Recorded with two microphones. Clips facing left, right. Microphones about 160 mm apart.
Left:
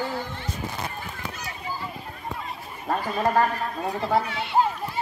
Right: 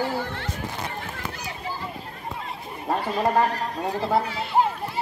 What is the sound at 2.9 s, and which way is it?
Speech, centre (ahead or behind).